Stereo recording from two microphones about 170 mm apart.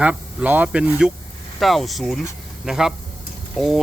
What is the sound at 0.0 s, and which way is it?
Speech, 10° right (ahead or behind).